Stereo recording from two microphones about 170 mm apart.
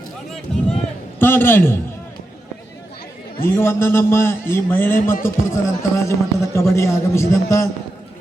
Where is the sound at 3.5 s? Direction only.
15° left (ahead or behind).